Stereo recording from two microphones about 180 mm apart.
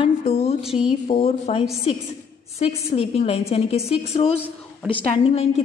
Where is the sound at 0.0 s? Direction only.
35° left (ahead or behind).